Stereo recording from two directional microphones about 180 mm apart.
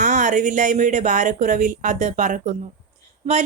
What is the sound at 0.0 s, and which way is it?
Speech, 45° right (ahead or behind).